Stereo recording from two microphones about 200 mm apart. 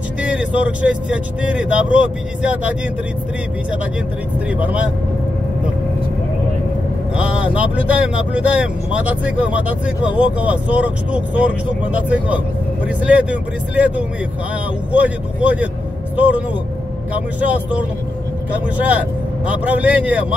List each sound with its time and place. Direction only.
0.2 s speech: 5° right (ahead or behind)
4.5 s speech: 5° right (ahead or behind)
7.2 s speech: 5° right (ahead or behind)
12.8 s speech: 5° right (ahead or behind)
19.4 s speech: 5° right (ahead or behind)